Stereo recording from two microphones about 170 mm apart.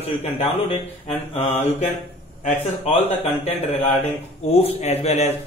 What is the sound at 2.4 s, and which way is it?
A man's voice, 40° left (ahead or behind).